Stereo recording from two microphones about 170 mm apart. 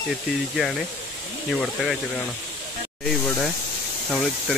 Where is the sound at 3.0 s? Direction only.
5° left (ahead or behind).